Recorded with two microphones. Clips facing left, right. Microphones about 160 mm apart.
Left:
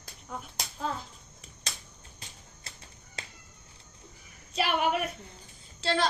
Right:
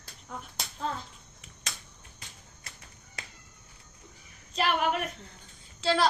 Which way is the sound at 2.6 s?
30° left (ahead or behind).